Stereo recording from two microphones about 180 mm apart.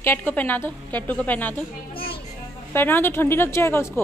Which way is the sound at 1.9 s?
30° left (ahead or behind).